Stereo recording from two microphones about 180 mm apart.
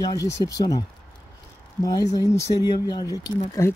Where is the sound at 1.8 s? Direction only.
20° left (ahead or behind).